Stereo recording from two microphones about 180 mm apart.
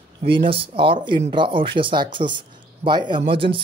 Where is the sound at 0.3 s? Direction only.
30° right (ahead or behind).